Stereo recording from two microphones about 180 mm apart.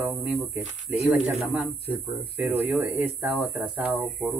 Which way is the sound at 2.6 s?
10° right (ahead or behind).